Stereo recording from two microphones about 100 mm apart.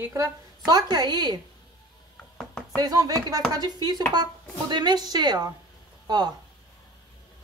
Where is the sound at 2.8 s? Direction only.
40° right (ahead or behind).